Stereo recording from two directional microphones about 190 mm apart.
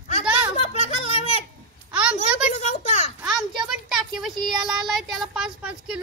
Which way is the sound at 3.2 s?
Centre (ahead or behind).